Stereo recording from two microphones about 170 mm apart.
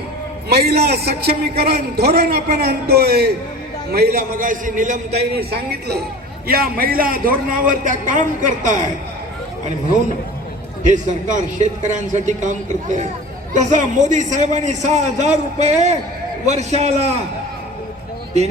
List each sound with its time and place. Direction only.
0.4 s a woman's voice: 70° right (ahead or behind); by 4.9 s 50° right (ahead or behind)
5.4 s a woman's voice: 70° right (ahead or behind)
6.5 s a man's voice: 60° right (ahead or behind)
10.8 s a man's voice: 45° right (ahead or behind)